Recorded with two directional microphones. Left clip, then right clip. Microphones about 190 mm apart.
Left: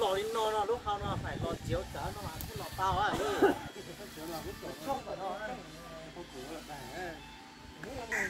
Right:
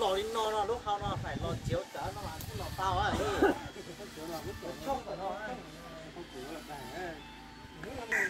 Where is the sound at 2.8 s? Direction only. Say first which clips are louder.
Left 1 dB; 40° right (ahead or behind).